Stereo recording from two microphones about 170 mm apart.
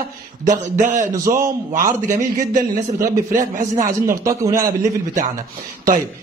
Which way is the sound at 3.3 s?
50° right (ahead or behind).